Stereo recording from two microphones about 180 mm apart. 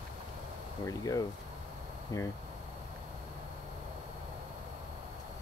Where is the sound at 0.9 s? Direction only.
20° left (ahead or behind).